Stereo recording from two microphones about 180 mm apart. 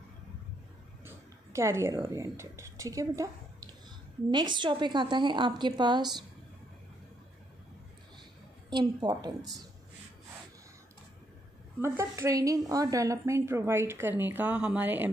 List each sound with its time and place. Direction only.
1.0 s a sound: 15° right (ahead or behind)
2.0 s a woman's voice: 15° right (ahead or behind)
8.6 s a woman's voice: 20° right (ahead or behind)
11.8 s a woman's voice: 15° right (ahead or behind)